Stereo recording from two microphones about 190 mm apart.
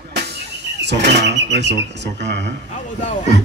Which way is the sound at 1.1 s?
65° right (ahead or behind).